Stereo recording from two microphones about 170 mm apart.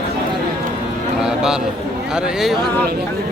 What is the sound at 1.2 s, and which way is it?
Speech, 5° right (ahead or behind).